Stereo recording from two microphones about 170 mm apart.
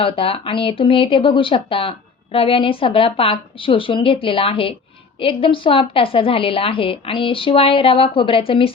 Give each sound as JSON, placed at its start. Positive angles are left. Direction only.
{"t": 0.0, "sound": "speech", "side_deg": 35}